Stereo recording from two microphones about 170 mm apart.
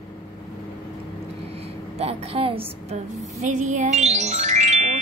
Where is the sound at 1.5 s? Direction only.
35° right (ahead or behind).